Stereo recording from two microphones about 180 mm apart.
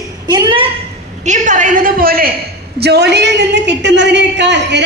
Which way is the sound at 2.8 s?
65° right (ahead or behind).